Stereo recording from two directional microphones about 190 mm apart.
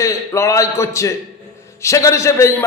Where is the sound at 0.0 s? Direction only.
15° left (ahead or behind).